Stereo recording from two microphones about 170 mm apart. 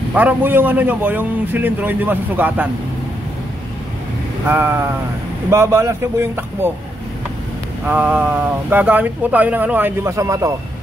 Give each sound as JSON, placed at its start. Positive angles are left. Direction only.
{"t": 0.1, "sound": "speech", "side_deg": -10}
{"t": 4.5, "sound": "speech", "side_deg": -15}
{"t": 7.8, "sound": "speech", "side_deg": -10}